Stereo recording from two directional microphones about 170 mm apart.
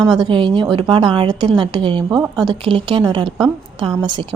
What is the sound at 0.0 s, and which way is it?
A woman's voice, 25° right (ahead or behind).